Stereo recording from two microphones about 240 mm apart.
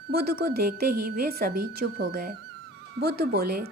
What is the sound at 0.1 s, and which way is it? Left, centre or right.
A woman's voice, right.